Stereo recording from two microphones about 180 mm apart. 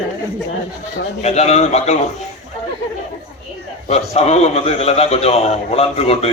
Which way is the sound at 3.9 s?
40° left (ahead or behind).